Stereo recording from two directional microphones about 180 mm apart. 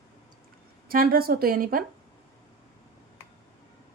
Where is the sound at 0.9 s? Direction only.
55° right (ahead or behind).